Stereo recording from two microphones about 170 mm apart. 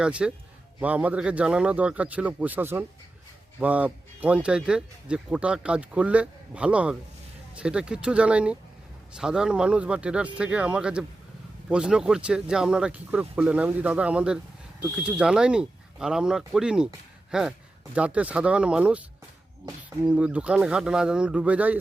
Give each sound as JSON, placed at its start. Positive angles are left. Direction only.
{"t": 0.0, "sound": "speech", "side_deg": -5}
{"t": 19.6, "sound": "speech", "side_deg": -20}
{"t": 20.1, "sound": "speech", "side_deg": -5}